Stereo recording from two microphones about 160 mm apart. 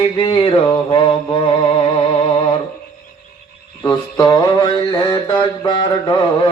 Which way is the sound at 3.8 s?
25° left (ahead or behind).